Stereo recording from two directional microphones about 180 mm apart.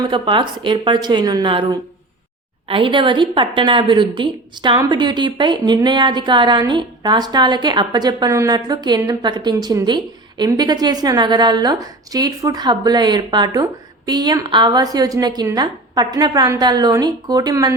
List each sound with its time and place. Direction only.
0.0 s a woman's voice: 25° right (ahead or behind)